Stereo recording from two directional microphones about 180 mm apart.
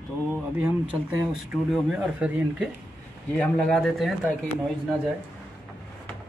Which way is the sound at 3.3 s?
5° left (ahead or behind).